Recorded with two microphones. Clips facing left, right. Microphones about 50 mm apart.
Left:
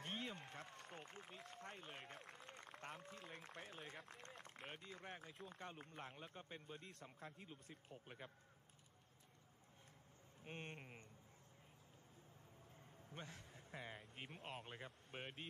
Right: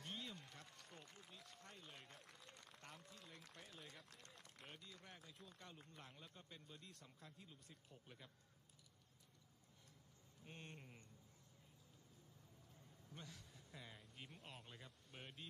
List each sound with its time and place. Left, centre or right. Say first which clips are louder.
0.0 s a man's voice: left 4 dB; left
10.4 s a man's voice: left 5 dB; left
12.7 s speech: left 4 dB; left